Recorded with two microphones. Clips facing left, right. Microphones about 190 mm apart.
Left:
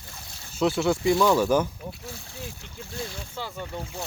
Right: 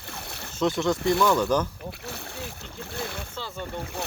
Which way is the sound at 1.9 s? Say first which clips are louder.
Right 2 dB; 65° right (ahead or behind).